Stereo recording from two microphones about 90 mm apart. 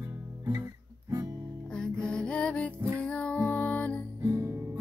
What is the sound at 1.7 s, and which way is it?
Music, 10° left (ahead or behind).